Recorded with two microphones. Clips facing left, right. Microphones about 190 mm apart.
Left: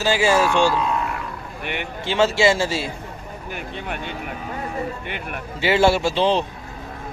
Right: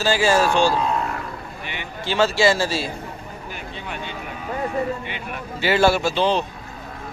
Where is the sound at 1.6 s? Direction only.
60° left (ahead or behind).